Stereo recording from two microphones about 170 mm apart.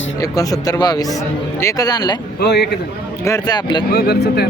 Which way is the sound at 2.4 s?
75° left (ahead or behind).